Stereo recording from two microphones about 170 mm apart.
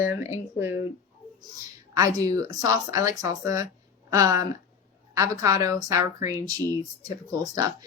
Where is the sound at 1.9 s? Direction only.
20° right (ahead or behind).